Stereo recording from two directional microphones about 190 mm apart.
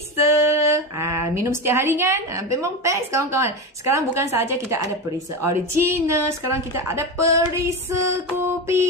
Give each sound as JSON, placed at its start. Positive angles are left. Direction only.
{"t": 0.2, "sound": "speech", "side_deg": -15}